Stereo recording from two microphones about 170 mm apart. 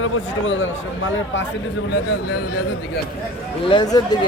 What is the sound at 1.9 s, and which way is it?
Speech, 90° left.